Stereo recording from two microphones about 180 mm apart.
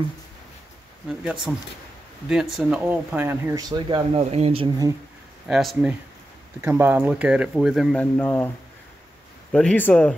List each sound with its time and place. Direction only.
1.0 s speech: 5° right (ahead or behind); by 4.2 s 25° right (ahead or behind)
4.2 s speech: 35° right (ahead or behind)
5.5 s speech: centre (ahead or behind)
9.5 s speech: 5° left (ahead or behind)